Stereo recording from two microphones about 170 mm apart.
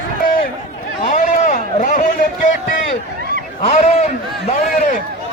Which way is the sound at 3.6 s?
40° left (ahead or behind).